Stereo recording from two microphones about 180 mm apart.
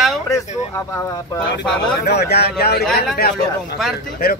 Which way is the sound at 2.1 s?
65° left (ahead or behind).